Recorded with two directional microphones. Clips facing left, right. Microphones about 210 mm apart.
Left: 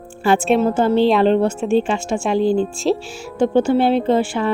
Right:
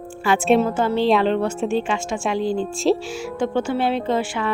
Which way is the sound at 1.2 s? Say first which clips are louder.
Left 5 dB; 30° left (ahead or behind).